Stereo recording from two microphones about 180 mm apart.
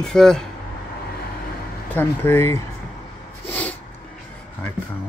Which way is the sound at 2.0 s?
15° left (ahead or behind).